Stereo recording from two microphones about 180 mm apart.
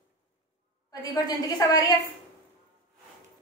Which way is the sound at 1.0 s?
20° left (ahead or behind).